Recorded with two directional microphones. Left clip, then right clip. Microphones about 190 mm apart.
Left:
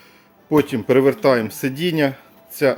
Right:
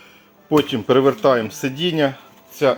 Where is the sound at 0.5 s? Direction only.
15° left (ahead or behind).